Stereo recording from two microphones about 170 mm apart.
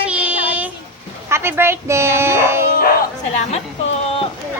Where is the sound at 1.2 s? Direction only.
15° right (ahead or behind).